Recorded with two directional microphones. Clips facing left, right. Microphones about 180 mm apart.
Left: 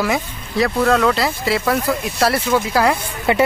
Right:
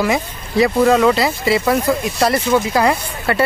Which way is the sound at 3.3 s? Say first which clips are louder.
Left 2 dB; 20° left (ahead or behind).